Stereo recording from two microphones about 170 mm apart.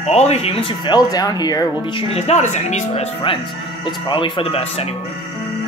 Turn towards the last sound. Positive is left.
turn(degrees=35)  # may be behind; listen again after turning